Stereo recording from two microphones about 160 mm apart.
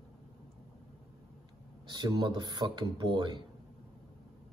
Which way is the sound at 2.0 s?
25° right (ahead or behind).